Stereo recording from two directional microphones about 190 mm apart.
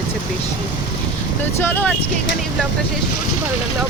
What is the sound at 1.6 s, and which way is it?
Speech, 10° left (ahead or behind).